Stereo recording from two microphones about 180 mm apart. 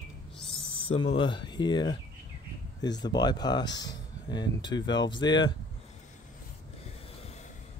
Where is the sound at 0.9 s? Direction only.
30° left (ahead or behind).